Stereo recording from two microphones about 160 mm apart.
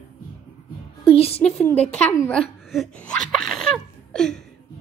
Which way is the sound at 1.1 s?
40° left (ahead or behind).